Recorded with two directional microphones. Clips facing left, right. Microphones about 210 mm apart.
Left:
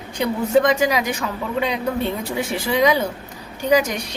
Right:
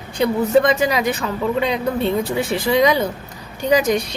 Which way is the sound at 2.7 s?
10° left (ahead or behind).